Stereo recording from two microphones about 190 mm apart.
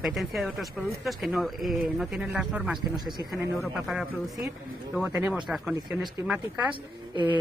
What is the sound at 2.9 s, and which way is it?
Speech, 20° right (ahead or behind).